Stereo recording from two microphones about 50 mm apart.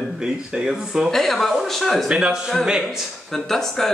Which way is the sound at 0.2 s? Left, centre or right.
Centre.